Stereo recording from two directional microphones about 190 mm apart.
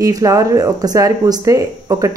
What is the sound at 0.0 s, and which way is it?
Speech, 15° right (ahead or behind).